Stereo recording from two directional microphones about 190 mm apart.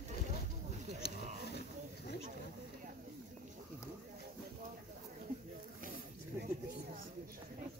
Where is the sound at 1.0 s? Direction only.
55° left (ahead or behind).